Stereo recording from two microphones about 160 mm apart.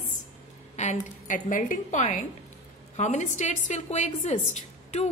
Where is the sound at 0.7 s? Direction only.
50° left (ahead or behind).